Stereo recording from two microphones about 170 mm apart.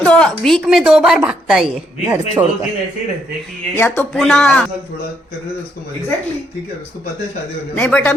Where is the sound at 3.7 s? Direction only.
10° left (ahead or behind).